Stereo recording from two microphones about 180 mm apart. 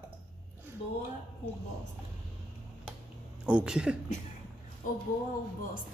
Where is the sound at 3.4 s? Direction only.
5° right (ahead or behind).